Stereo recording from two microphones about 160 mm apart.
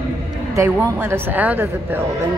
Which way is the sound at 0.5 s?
15° right (ahead or behind).